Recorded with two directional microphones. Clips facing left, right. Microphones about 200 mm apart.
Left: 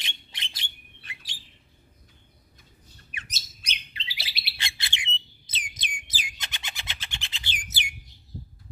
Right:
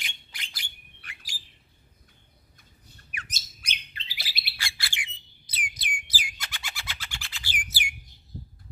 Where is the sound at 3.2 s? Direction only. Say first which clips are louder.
Even; 50° right (ahead or behind).